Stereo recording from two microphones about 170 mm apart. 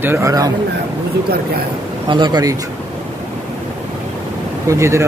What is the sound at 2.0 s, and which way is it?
Speech, 30° right (ahead or behind).